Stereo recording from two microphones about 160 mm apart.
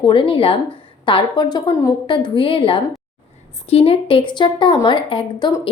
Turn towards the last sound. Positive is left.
turn(degrees=25)  # may be behind; listen again after turning